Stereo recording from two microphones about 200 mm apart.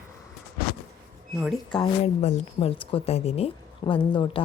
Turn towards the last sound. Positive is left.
turn(degrees=25)  # may be behind; listen again after turning